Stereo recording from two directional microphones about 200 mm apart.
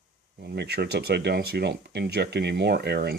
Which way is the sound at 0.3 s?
55° right (ahead or behind).